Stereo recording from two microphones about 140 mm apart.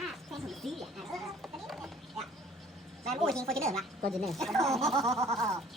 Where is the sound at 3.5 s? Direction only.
5° left (ahead or behind).